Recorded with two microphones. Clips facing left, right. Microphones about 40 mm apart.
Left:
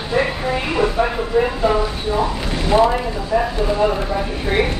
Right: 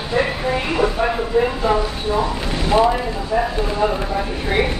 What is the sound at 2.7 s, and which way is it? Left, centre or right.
Speech, centre.